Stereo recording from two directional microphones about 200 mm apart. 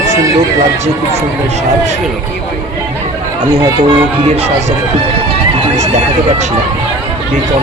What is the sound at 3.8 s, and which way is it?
Speech, 30° right (ahead or behind).